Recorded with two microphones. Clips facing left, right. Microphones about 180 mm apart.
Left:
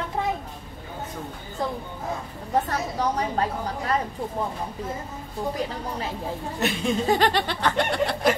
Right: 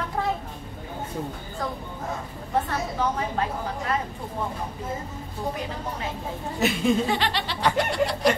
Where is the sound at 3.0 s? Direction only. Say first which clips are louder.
Left 2 dB; 40° left (ahead or behind).